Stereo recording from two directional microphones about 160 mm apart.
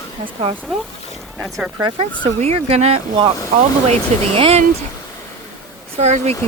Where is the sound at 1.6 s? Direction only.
5° right (ahead or behind).